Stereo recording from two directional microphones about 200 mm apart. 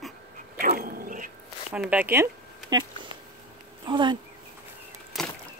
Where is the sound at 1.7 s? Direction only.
5° right (ahead or behind).